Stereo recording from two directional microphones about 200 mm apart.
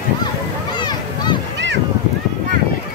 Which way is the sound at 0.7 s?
20° left (ahead or behind).